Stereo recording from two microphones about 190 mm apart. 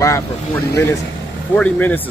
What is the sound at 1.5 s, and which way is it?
Speech, 10° left (ahead or behind).